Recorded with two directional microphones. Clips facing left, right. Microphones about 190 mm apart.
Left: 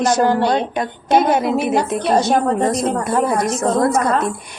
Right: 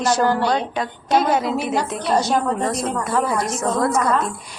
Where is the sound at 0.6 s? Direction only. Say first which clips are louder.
Left 3 dB; 55° left (ahead or behind).